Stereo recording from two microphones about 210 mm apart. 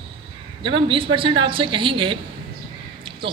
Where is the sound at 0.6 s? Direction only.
25° right (ahead or behind).